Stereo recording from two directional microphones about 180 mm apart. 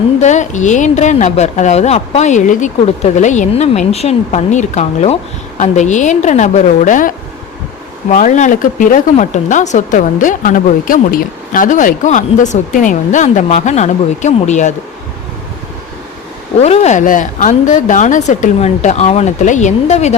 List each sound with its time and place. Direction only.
0.2 s a woman's voice: 40° left (ahead or behind)
8.1 s speech: 45° left (ahead or behind)
16.6 s a woman's voice: 35° left (ahead or behind)